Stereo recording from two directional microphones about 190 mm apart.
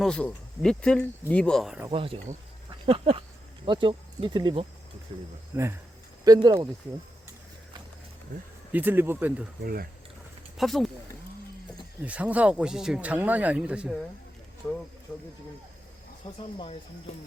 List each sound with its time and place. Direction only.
0.0 s speech: 5° left (ahead or behind)
1.9 s speech: 30° right (ahead or behind)
2.6 s a sound: 30° right (ahead or behind)
3.7 s speech: 25° right (ahead or behind)
5.5 s speech: 10° right (ahead or behind)
8.7 s speech: 10° right (ahead or behind)
9.6 s speech: 50° right (ahead or behind)
10.6 s speech: centre (ahead or behind)
12.0 s speech: 5° right (ahead or behind)
15.1 s speech: 5° left (ahead or behind)
16.2 s speech: 25° left (ahead or behind)